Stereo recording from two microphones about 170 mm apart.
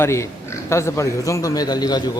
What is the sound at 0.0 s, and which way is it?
Speech, 15° left (ahead or behind).